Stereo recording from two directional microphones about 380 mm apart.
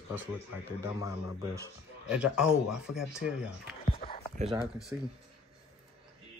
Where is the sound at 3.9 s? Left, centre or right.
Centre.